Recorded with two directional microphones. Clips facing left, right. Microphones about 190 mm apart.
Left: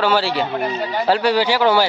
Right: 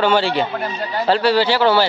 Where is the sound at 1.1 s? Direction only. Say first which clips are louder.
Right 1 dB; 15° left (ahead or behind).